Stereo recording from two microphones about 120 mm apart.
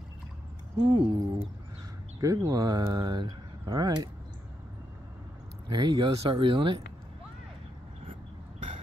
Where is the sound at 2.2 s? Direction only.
30° right (ahead or behind).